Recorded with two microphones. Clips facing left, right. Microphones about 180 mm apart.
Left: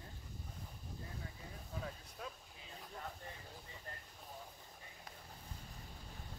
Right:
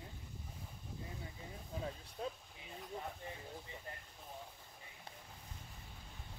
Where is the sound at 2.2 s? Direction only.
30° right (ahead or behind).